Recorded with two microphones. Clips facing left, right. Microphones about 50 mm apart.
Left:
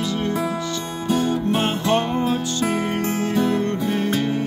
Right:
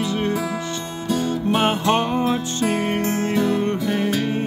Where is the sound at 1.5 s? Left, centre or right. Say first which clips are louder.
Right 4 dB; right.